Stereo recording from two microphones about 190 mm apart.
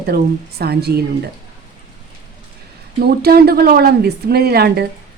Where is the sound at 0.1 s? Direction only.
55° right (ahead or behind).